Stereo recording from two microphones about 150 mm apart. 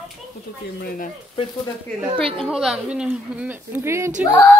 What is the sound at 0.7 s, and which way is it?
Speech, 80° left.